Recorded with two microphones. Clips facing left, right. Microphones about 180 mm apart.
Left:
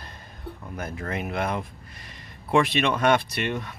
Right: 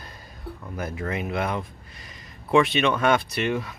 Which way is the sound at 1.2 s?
Centre (ahead or behind).